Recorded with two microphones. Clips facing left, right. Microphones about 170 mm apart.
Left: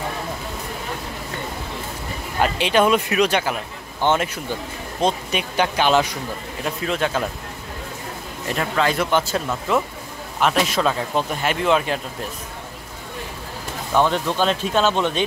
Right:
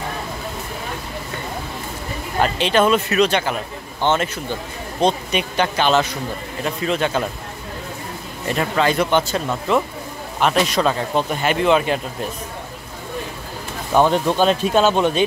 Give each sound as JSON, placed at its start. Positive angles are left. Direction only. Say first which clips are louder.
{"t": 2.4, "sound": "speech", "louder": "right 1 dB", "side_deg": 10}
{"t": 6.6, "sound": "speech", "louder": "right 2 dB", "side_deg": 0}
{"t": 8.5, "sound": "speech", "louder": "right 2 dB", "side_deg": 0}
{"t": 13.9, "sound": "speech", "louder": "right 3 dB", "side_deg": -15}